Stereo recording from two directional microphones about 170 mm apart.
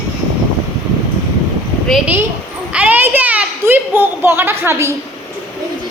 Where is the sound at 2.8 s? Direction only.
10° right (ahead or behind).